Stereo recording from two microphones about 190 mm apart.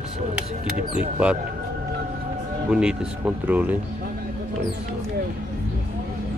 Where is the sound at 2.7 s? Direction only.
5° right (ahead or behind).